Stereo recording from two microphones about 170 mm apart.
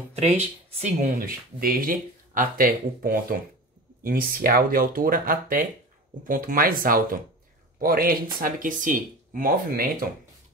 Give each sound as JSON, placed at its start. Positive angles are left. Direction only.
{"t": 0.1, "sound": "speech", "side_deg": -40}
{"t": 1.2, "sound": "speech", "side_deg": -60}